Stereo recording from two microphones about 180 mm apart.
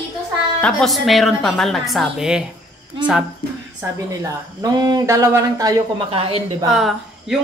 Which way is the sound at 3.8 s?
20° right (ahead or behind).